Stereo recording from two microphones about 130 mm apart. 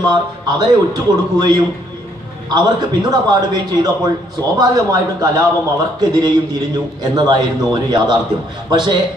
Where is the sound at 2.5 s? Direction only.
30° right (ahead or behind).